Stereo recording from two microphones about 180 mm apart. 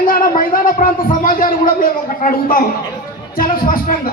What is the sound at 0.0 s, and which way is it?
A man's voice, 50° left (ahead or behind).